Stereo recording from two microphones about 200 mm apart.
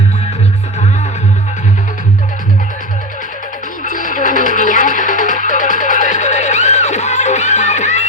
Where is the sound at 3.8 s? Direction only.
40° left (ahead or behind).